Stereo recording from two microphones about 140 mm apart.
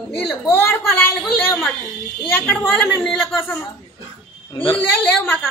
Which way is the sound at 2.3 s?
10° left (ahead or behind).